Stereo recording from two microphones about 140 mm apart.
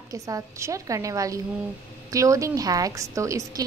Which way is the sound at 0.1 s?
25° right (ahead or behind).